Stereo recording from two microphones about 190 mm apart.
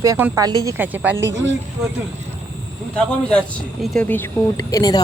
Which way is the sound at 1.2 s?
75° right (ahead or behind).